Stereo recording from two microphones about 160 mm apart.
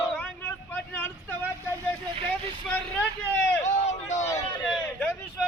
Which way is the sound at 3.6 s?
45° left (ahead or behind).